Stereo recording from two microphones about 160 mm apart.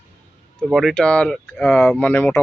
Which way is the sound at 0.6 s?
Centre (ahead or behind).